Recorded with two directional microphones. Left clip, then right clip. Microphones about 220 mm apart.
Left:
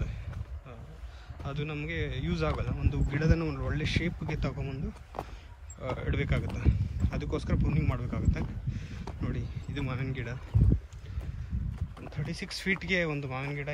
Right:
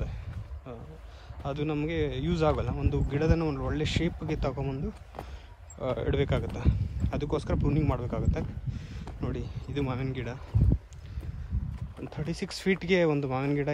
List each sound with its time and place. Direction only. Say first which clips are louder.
1.4 s speech: right 6 dB; 15° right (ahead or behind)
5.8 s speech: right 6 dB; 20° right (ahead or behind)
12.1 s speech: right 2 dB; 15° right (ahead or behind)